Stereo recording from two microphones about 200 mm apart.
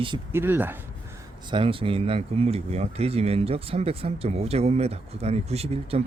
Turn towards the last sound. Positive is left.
turn(degrees=-30)  # may be behind; listen again after turning